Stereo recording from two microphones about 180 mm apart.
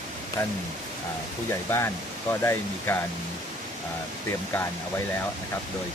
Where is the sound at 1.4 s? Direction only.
15° left (ahead or behind).